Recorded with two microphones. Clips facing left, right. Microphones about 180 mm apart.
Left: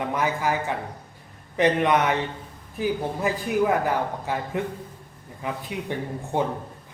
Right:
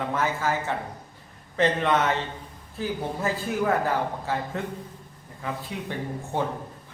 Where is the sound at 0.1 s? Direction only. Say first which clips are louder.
Left 1 dB; 15° left (ahead or behind).